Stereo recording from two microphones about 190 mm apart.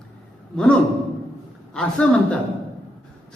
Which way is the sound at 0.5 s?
5° left (ahead or behind).